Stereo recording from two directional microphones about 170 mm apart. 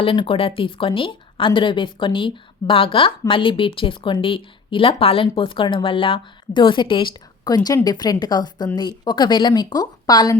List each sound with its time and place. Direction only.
0.0 s speech: 30° left (ahead or behind)